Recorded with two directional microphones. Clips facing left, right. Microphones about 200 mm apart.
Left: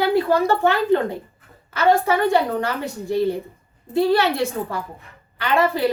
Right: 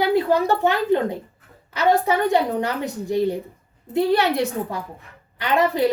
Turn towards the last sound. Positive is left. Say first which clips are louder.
# even
turn(degrees=-20)  # may be behind; listen again after turning